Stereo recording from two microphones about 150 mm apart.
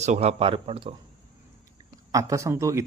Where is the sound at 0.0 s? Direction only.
45° right (ahead or behind).